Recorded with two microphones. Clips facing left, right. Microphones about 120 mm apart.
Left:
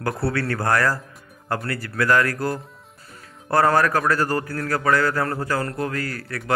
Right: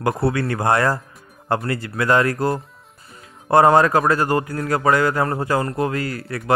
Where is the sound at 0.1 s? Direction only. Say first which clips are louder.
Right 2 dB; 20° right (ahead or behind).